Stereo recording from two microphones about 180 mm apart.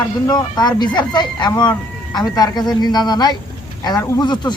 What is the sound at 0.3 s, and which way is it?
Speech, 25° left (ahead or behind).